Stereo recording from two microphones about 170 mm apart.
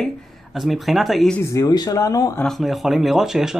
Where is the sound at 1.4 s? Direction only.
20° left (ahead or behind).